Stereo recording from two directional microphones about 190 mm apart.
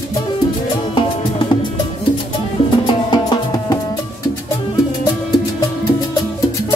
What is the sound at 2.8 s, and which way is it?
Music, 20° left (ahead or behind).